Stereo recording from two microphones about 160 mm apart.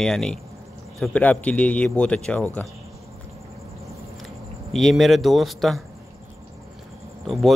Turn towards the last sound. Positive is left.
turn(degrees=0)  # may be behind; listen again after turning